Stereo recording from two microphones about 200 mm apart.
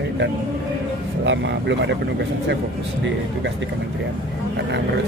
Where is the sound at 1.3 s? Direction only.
65° right (ahead or behind).